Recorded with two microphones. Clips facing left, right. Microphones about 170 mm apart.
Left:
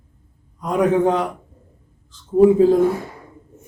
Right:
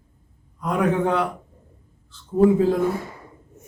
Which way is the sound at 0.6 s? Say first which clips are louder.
Left 4 dB; 20° left (ahead or behind).